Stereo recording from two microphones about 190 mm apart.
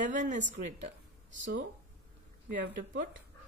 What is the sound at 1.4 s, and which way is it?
Speech, 70° right (ahead or behind).